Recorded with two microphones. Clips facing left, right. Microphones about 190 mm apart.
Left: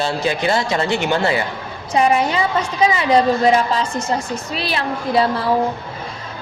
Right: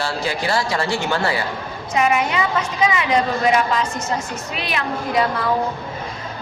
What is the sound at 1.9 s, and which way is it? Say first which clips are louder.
A woman's voice: left 3 dB; 30° left (ahead or behind).